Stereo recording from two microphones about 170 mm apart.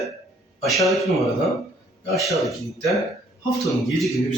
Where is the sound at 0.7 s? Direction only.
Centre (ahead or behind).